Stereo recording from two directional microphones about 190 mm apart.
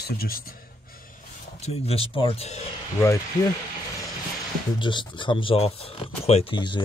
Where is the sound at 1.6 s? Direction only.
30° left (ahead or behind).